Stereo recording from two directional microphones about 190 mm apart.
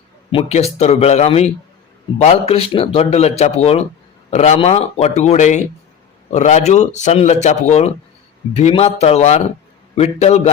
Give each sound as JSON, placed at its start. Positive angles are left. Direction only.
{"t": 0.3, "sound": "speech", "side_deg": 30}